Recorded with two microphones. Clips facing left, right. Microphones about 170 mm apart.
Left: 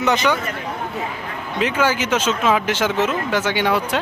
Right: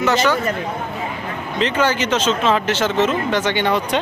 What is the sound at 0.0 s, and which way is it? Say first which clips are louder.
Speech: right 1 dB; 15° left (ahead or behind).